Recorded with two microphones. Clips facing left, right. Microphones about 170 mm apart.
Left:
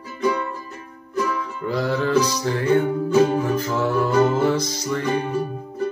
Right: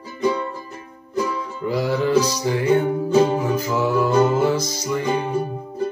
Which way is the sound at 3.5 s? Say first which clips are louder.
Right 1 dB; 10° right (ahead or behind).